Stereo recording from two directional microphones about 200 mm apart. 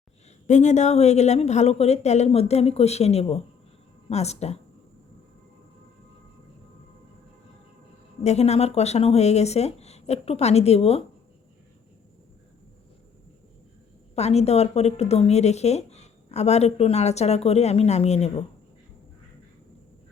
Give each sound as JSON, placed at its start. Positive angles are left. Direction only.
{"t": 0.4, "sound": "speech", "side_deg": 35}
{"t": 8.2, "sound": "speech", "side_deg": 35}
{"t": 14.2, "sound": "speech", "side_deg": 30}